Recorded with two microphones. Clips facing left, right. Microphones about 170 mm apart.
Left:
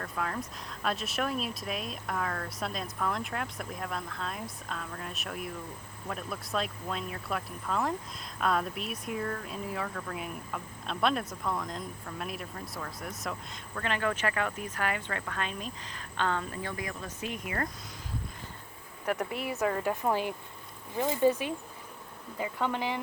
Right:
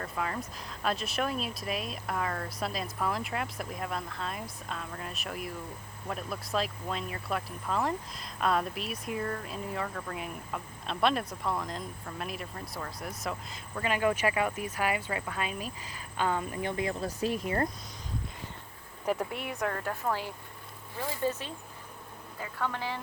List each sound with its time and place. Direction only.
0.0 s speech: centre (ahead or behind)
13.7 s speech: 10° right (ahead or behind); by 17.7 s 30° right (ahead or behind)
19.1 s speech: centre (ahead or behind); by 23.0 s 15° left (ahead or behind)